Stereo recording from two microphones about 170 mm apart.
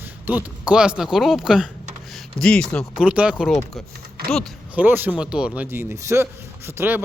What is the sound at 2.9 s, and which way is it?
Speech, 5° right (ahead or behind).